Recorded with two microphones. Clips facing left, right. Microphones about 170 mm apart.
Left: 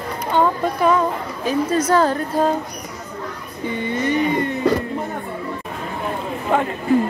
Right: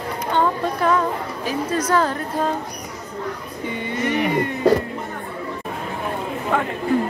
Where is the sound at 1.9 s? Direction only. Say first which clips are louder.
Left 3 dB; 35° left (ahead or behind).